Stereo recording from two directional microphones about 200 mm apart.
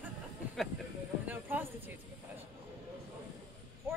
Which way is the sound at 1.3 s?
10° right (ahead or behind).